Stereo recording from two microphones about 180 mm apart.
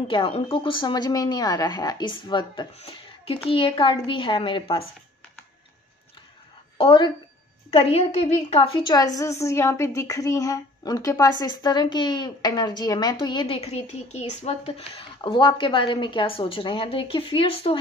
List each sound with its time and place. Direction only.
0.1 s a woman's voice: 30° left (ahead or behind)
6.8 s a woman's voice: 25° left (ahead or behind)